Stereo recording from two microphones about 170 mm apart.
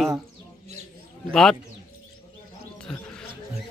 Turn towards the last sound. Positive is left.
turn(degrees=5)  # may be behind; listen again after turning